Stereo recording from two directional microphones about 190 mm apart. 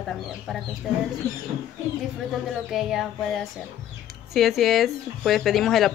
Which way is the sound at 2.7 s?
Centre (ahead or behind).